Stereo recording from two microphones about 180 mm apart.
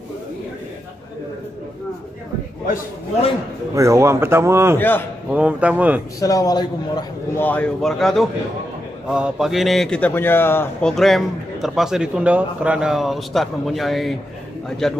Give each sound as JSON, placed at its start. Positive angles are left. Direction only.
{"t": 3.7, "sound": "a man's voice", "side_deg": -15}
{"t": 4.7, "sound": "a man's voice", "side_deg": 10}
{"t": 5.3, "sound": "a man's voice", "side_deg": -5}
{"t": 6.1, "sound": "a man's voice", "side_deg": 20}
{"t": 7.4, "sound": "a man's voice", "side_deg": 5}